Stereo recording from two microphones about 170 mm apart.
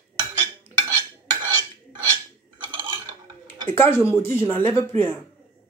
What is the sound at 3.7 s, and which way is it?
Speech, 15° left (ahead or behind).